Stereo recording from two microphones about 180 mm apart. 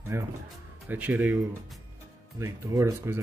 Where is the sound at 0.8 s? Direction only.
10° right (ahead or behind).